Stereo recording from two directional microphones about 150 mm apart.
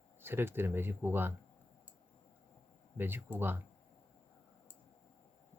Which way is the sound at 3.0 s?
15° right (ahead or behind).